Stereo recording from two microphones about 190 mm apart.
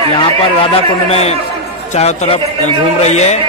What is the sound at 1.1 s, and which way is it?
Speech, 35° left (ahead or behind).